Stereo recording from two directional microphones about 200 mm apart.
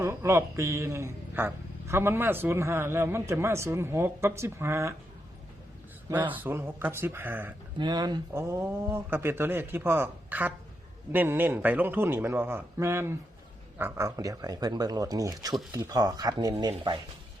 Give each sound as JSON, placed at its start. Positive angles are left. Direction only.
{"t": 0.0, "sound": "a man's voice", "side_deg": -15}
{"t": 6.1, "sound": "a man's voice", "side_deg": -10}